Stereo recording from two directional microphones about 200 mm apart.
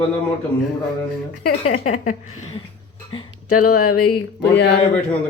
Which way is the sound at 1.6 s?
35° left (ahead or behind).